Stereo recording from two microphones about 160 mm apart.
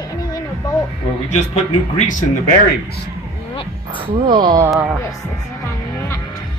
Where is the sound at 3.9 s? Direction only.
30° right (ahead or behind).